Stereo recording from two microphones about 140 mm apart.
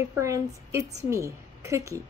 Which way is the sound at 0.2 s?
20° right (ahead or behind).